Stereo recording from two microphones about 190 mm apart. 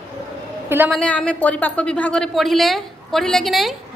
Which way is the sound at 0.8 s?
5° left (ahead or behind).